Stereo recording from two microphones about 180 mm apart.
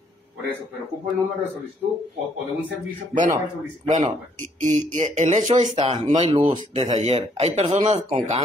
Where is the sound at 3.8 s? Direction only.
40° right (ahead or behind).